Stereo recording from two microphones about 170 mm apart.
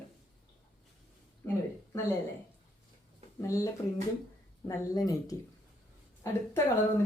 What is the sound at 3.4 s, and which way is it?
Speech, 20° left (ahead or behind).